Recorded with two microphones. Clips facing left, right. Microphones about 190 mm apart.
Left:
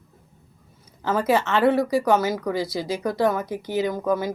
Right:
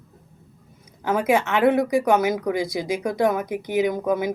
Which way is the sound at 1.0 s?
15° right (ahead or behind).